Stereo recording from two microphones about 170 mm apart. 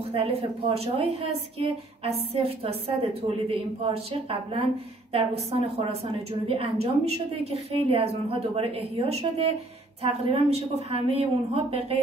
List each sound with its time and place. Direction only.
0.1 s a woman's voice: 35° right (ahead or behind)